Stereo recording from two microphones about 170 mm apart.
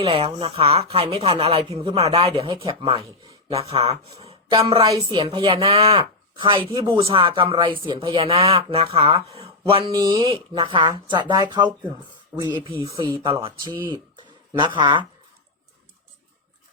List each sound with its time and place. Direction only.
0.0 s speech: 35° right (ahead or behind)
4.2 s a sound: 35° right (ahead or behind)
4.5 s a woman's voice: 25° right (ahead or behind)
5.6 s a woman's voice: 35° right (ahead or behind)
12.5 s a woman's voice: 25° right (ahead or behind)